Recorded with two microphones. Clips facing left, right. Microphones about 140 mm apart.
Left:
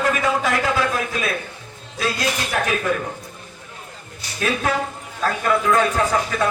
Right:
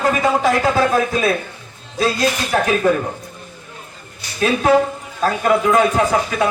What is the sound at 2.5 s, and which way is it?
Speech, 35° right (ahead or behind).